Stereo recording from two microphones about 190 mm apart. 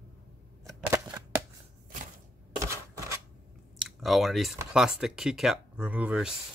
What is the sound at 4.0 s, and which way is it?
Speech, centre (ahead or behind).